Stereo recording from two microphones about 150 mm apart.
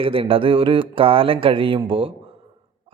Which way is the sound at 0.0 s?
35° right (ahead or behind).